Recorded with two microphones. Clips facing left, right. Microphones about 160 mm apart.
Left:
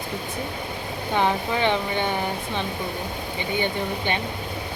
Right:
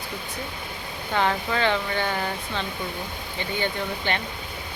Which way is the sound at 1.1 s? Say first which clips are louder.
Left 1 dB; 15° left (ahead or behind).